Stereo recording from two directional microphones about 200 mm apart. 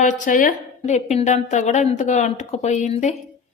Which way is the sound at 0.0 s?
40° left (ahead or behind).